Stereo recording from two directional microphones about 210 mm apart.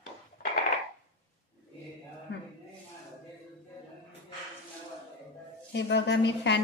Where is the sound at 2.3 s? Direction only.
55° left (ahead or behind).